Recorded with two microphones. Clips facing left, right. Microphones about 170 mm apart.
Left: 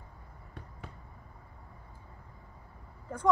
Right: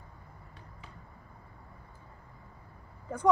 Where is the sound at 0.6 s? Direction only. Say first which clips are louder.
Left 7 dB; 55° left (ahead or behind).